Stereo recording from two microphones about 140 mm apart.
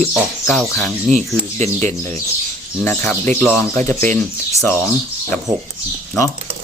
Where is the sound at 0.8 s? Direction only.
Centre (ahead or behind).